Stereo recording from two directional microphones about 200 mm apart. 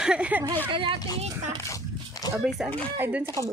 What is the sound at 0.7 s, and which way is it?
Speech, 25° right (ahead or behind).